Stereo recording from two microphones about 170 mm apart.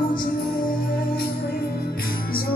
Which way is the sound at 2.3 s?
60° left (ahead or behind).